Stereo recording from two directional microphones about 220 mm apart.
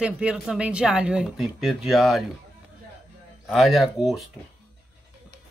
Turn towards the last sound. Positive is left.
turn(degrees=0)  # may be behind; listen again after turning